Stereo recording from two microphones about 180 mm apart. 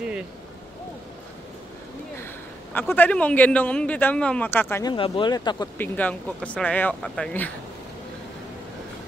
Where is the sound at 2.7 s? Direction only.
10° left (ahead or behind).